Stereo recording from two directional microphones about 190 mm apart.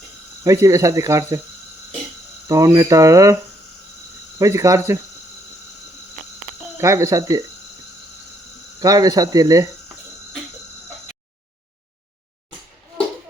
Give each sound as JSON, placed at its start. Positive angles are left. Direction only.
{"t": 0.4, "sound": "speech", "side_deg": -15}
{"t": 2.5, "sound": "speech", "side_deg": -15}
{"t": 4.4, "sound": "speech", "side_deg": -15}
{"t": 6.7, "sound": "speech", "side_deg": -15}
{"t": 8.8, "sound": "speech", "side_deg": -20}